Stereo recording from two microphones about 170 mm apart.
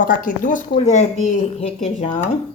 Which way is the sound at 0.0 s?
50° left (ahead or behind).